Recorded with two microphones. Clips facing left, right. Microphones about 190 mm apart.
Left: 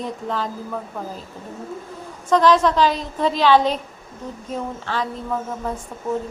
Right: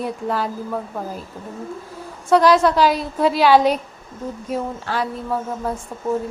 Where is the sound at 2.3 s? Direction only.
10° right (ahead or behind).